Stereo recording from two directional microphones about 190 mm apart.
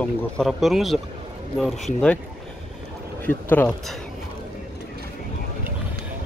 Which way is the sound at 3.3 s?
10° left (ahead or behind).